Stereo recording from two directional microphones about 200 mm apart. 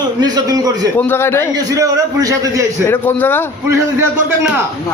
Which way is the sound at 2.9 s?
10° left (ahead or behind).